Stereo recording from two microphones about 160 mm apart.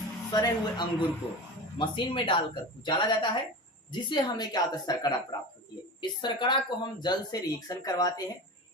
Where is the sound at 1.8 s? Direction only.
30° left (ahead or behind).